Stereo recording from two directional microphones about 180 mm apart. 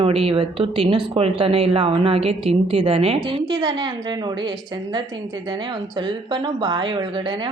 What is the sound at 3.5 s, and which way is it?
Speech, 20° right (ahead or behind).